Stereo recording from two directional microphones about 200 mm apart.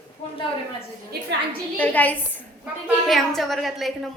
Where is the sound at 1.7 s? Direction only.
10° left (ahead or behind).